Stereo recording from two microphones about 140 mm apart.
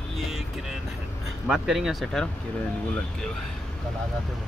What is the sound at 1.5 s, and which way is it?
Speech, 5° right (ahead or behind).